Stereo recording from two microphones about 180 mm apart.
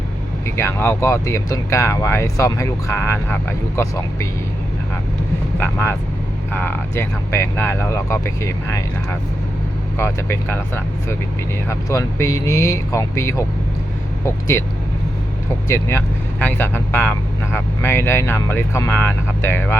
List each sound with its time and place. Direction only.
0.4 s speech: 15° left (ahead or behind)
5.5 s speech: 10° left (ahead or behind)
15.7 s speech: 15° left (ahead or behind)